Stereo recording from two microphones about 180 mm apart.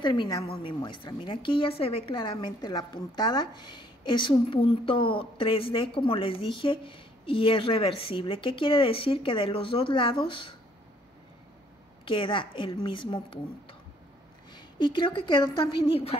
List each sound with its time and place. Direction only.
0.0 s a woman's voice: 25° left (ahead or behind)
12.0 s a woman's voice: 30° left (ahead or behind)